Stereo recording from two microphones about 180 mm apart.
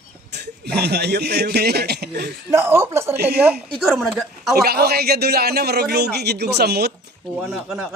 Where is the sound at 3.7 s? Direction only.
5° left (ahead or behind).